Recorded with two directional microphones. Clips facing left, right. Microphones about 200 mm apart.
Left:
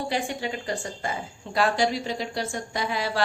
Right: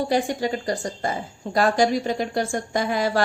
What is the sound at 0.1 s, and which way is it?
A woman's voice, 40° right (ahead or behind).